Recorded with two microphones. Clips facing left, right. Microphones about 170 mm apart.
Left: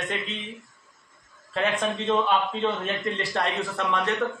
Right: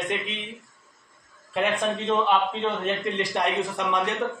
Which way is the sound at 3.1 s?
15° right (ahead or behind).